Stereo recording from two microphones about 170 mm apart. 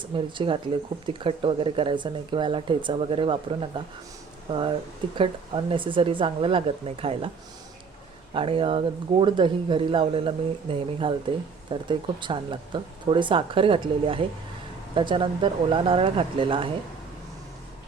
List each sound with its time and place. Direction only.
0.0 s speech: 30° right (ahead or behind)
8.3 s speech: 30° right (ahead or behind)